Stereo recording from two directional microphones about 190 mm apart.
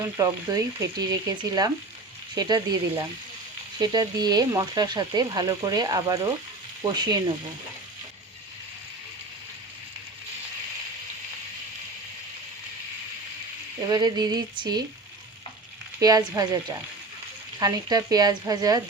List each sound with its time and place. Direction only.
0.0 s speech: 20° right (ahead or behind)
2.3 s speech: 20° right (ahead or behind)
13.8 s speech: 20° right (ahead or behind)
16.0 s speech: 20° right (ahead or behind)